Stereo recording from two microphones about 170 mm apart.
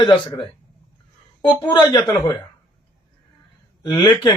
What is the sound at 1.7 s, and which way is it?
Speech, 25° left (ahead or behind).